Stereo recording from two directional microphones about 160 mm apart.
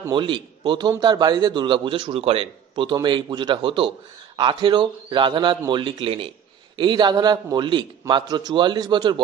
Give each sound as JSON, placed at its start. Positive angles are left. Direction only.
{"t": 0.1, "sound": "a man's voice", "side_deg": -30}